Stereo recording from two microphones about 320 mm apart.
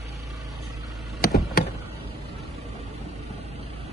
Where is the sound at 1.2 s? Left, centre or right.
Left.